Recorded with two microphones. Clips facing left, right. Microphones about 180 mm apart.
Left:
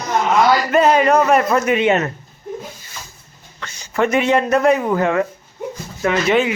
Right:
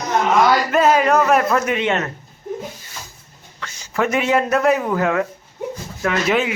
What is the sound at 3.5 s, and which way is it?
Speech, centre (ahead or behind).